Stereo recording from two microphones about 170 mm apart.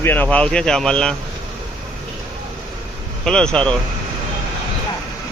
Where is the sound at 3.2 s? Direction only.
5° left (ahead or behind).